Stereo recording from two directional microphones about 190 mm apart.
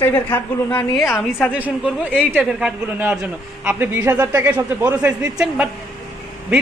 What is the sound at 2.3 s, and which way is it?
A man's voice, 5° right (ahead or behind).